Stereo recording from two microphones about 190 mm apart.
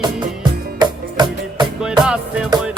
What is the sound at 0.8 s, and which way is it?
Music, 20° right (ahead or behind).